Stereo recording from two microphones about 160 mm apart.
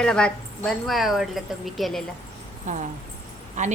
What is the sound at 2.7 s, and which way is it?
Speech, 50° right (ahead or behind).